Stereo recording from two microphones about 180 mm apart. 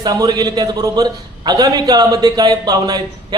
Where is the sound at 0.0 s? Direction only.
20° right (ahead or behind).